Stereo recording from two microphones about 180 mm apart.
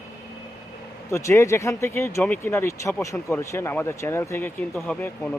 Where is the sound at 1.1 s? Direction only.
15° left (ahead or behind).